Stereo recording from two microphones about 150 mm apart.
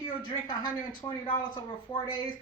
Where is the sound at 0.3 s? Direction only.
30° left (ahead or behind).